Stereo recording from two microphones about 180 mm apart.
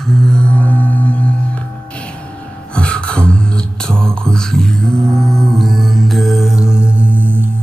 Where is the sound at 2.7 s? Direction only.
5° left (ahead or behind); by 7.5 s 10° right (ahead or behind).